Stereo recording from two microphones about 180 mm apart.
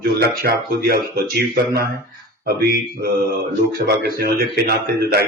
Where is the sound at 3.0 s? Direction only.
60° right (ahead or behind).